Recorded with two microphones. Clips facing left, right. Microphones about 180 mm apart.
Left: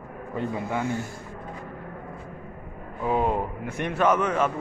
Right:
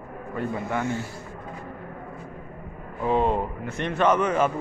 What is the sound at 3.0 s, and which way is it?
A man's voice, 5° left (ahead or behind).